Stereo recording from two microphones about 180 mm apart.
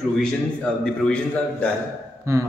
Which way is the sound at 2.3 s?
15° right (ahead or behind).